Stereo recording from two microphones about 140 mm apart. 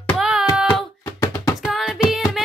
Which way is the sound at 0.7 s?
25° left (ahead or behind).